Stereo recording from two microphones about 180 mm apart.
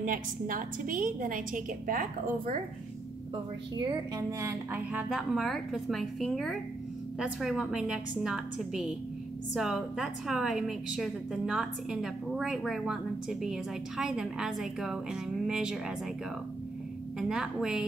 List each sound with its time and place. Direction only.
0.0 s a woman's voice: 50° right (ahead or behind)
3.8 s a woman's voice: 20° right (ahead or behind); by 15.8 s 5° right (ahead or behind)
17.2 s a woman's voice: 5° right (ahead or behind)